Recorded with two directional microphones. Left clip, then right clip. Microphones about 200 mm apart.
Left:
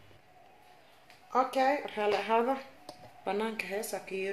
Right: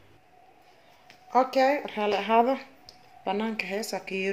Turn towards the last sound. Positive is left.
turn(degrees=-35)  # may be behind; listen again after turning